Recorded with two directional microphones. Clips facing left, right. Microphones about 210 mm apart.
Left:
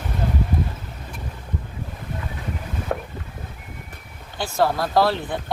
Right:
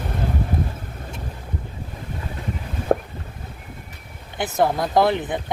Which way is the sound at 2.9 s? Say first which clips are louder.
Right 8 dB; 40° right (ahead or behind).